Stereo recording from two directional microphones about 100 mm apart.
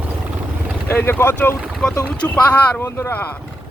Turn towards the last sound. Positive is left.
turn(degrees=25)  # may be behind; listen again after turning